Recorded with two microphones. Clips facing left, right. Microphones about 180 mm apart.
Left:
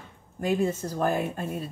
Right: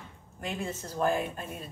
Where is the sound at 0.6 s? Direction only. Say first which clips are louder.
Left 5 dB; 40° left (ahead or behind).